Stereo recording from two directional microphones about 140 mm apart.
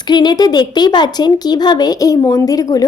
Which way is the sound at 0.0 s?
30° left (ahead or behind).